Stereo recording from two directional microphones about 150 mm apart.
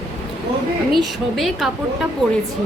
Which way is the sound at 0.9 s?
Centre (ahead or behind).